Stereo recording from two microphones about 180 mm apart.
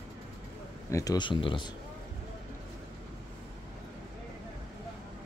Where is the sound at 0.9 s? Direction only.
20° left (ahead or behind).